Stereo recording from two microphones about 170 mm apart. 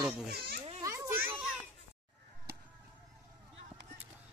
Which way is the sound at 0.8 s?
20° right (ahead or behind).